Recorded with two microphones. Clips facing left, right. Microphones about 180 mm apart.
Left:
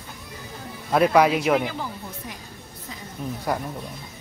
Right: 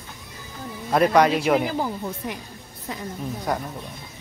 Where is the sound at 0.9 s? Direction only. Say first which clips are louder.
Even; 5° left (ahead or behind).